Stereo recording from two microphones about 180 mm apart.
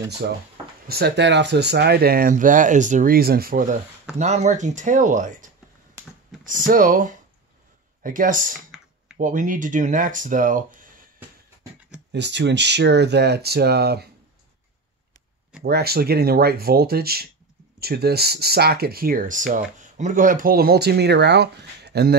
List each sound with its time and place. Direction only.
0.2 s speech: 50° right (ahead or behind)
0.8 s speech: 60° right (ahead or behind)
4.2 s speech: 40° right (ahead or behind)
12.1 s speech: 75° right (ahead or behind)
15.6 s speech: 60° right (ahead or behind)